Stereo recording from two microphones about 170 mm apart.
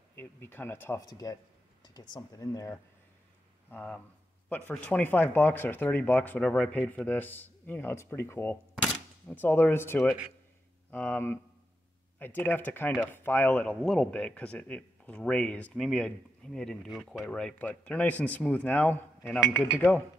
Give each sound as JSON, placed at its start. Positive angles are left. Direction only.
{"t": 0.1, "sound": "speech", "side_deg": 10}
{"t": 3.7, "sound": "speech", "side_deg": 5}